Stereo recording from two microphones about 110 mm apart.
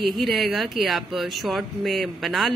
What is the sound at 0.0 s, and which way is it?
Speech, centre (ahead or behind).